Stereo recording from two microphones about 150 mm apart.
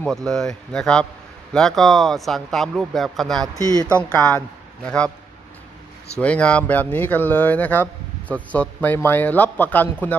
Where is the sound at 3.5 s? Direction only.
20° right (ahead or behind).